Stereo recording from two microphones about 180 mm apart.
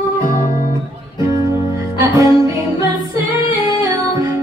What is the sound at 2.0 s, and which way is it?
Music, 20° right (ahead or behind).